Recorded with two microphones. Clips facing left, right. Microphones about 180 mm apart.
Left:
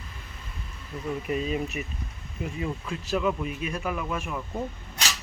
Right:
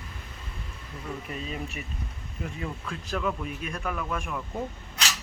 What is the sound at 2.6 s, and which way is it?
Speech, 5° left (ahead or behind).